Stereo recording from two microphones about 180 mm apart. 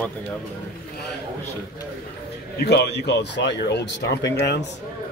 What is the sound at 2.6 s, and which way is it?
A man's voice, 65° left (ahead or behind).